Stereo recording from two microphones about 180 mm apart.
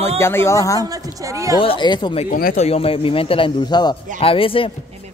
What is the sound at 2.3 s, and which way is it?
Speech, 50° left (ahead or behind).